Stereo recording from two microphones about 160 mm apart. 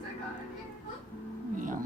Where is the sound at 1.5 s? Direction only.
55° right (ahead or behind).